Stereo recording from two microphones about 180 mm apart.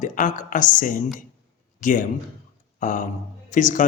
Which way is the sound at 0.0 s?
45° left (ahead or behind).